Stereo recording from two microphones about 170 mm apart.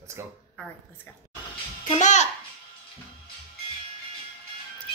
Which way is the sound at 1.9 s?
45° left (ahead or behind).